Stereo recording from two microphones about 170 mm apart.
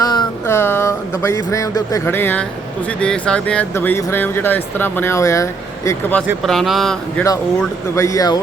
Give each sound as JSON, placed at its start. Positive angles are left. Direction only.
{"t": 0.0, "sound": "a sound", "side_deg": 25}
{"t": 0.4, "sound": "speech", "side_deg": 15}
{"t": 6.4, "sound": "speech", "side_deg": 0}
{"t": 7.9, "sound": "speech", "side_deg": 20}